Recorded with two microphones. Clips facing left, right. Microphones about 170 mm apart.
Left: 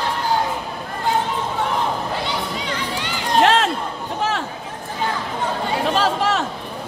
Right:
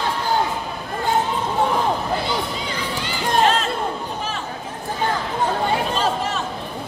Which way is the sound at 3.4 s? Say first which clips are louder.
Left 4 dB; 80° left.